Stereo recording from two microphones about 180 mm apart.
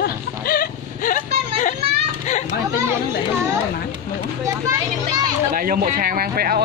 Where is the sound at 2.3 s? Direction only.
40° left (ahead or behind).